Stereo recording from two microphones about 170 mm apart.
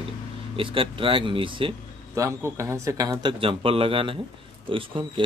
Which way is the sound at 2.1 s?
20° right (ahead or behind).